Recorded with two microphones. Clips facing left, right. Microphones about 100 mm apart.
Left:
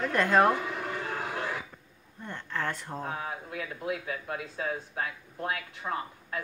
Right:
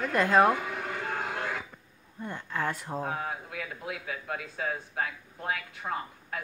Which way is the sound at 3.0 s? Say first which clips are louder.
Right 4 dB; 35° right (ahead or behind).